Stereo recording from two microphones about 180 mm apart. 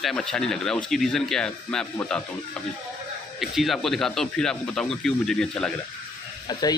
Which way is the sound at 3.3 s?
Centre (ahead or behind).